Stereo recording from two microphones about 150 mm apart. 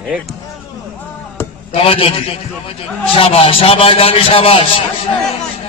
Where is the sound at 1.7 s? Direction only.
35° left (ahead or behind).